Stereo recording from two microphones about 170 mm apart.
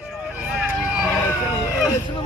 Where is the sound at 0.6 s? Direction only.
5° right (ahead or behind).